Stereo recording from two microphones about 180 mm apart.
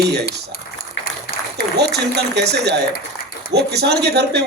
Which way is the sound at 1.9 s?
65° right (ahead or behind).